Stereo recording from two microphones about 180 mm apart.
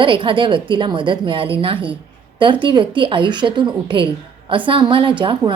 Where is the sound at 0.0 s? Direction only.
30° right (ahead or behind).